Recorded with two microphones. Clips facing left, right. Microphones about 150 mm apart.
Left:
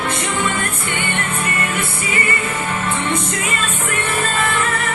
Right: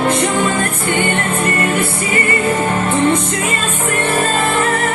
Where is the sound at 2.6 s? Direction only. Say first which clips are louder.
Right 7 dB; 40° right (ahead or behind).